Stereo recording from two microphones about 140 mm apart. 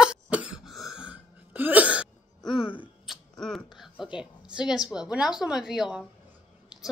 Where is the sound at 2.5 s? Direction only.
40° left (ahead or behind).